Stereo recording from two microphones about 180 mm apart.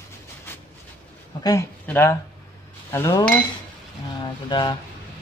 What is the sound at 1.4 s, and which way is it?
Speech, 20° left (ahead or behind).